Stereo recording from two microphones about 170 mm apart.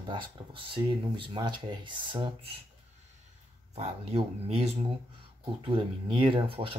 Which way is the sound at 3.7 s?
40° right (ahead or behind).